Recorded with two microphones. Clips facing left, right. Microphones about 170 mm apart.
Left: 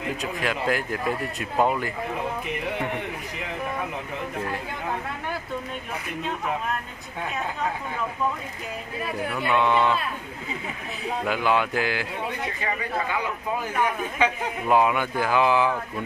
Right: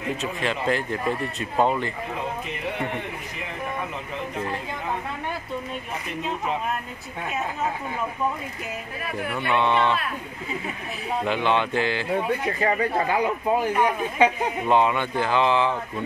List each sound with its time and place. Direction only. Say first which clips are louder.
0.2 s speech: right 1 dB; 5° left (ahead or behind)
9.4 s speech: even; 5° left (ahead or behind)
11.2 s speech: even; 5° left (ahead or behind)
12.5 s speech: right 6 dB; 40° right (ahead or behind)
14.7 s speech: even; 5° left (ahead or behind)